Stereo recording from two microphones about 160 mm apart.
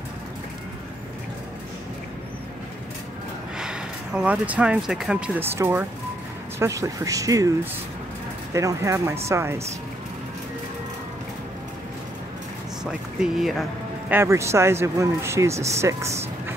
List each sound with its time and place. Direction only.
3.5 s speech: 5° right (ahead or behind); by 7.5 s 20° right (ahead or behind)
8.5 s speech: 20° right (ahead or behind)
13.2 s speech: centre (ahead or behind)
14.1 s speech: 15° right (ahead or behind)